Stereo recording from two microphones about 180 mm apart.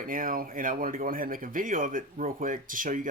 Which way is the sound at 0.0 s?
50° right (ahead or behind).